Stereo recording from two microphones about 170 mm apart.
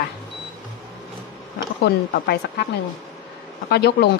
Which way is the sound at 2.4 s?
75° left (ahead or behind).